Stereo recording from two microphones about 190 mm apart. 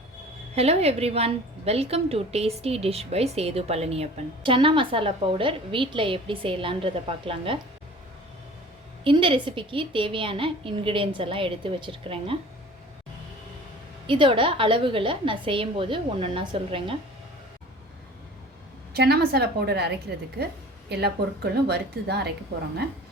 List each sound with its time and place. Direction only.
0.5 s a woman's voice: 35° right (ahead or behind)
9.0 s a woman's voice: 25° right (ahead or behind)
14.1 s a woman's voice: 25° right (ahead or behind)
18.9 s a woman's voice: 55° right (ahead or behind)